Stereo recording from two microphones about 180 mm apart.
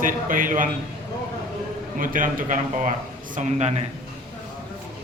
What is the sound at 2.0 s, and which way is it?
A man's voice, 50° right (ahead or behind).